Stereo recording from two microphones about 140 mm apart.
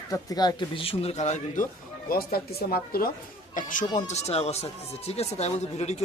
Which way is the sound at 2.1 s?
90° left.